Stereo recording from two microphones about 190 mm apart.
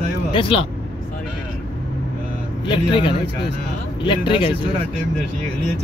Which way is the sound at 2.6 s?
25° left (ahead or behind).